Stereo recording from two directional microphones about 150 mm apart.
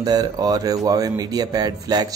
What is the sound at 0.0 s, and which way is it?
Speech, 25° right (ahead or behind).